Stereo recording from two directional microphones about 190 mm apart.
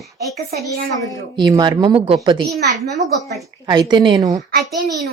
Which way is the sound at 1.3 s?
20° right (ahead or behind).